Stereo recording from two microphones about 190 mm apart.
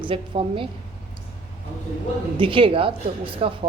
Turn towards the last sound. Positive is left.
turn(degrees=-30)  # may be behind; listen again after turning